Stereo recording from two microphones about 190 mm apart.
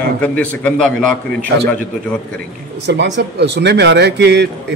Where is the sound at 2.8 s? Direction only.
65° right (ahead or behind).